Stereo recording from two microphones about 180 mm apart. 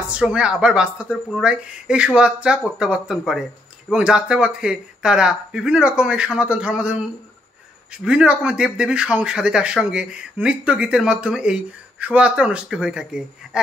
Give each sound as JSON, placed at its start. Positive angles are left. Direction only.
{"t": 0.1, "sound": "speech", "side_deg": -5}